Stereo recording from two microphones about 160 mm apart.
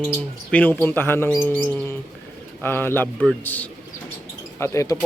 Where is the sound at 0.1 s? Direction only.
10° left (ahead or behind).